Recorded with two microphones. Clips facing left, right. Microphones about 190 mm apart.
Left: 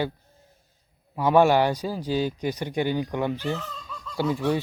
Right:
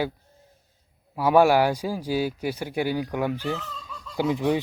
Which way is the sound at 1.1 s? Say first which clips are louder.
Right 1 dB; 5° right (ahead or behind).